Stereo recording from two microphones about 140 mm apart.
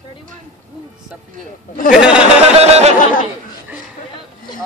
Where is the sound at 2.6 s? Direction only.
50° right (ahead or behind).